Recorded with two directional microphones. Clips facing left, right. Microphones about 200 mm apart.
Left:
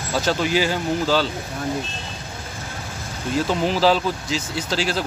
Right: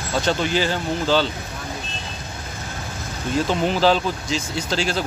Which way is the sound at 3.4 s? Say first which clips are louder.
Even; centre (ahead or behind).